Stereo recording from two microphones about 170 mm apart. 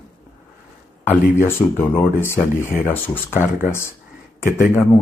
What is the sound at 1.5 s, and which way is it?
Speech, 15° left (ahead or behind).